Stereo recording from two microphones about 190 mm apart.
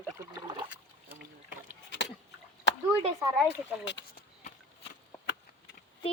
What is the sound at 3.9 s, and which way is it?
Speech, 70° left (ahead or behind).